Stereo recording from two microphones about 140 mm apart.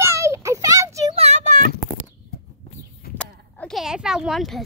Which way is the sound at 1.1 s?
55° right (ahead or behind).